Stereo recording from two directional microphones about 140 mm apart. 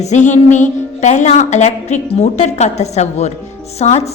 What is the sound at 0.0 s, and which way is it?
A woman's voice, 55° left (ahead or behind).